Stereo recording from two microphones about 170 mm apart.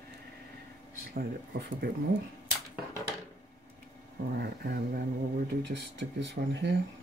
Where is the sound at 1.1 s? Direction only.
65° right (ahead or behind).